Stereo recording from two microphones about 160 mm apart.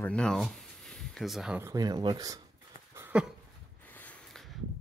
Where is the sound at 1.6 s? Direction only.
25° right (ahead or behind).